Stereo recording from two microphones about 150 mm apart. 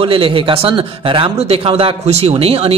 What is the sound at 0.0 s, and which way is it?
A man's voice, 35° right (ahead or behind).